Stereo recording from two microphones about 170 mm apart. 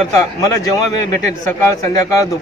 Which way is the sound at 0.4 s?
20° left (ahead or behind).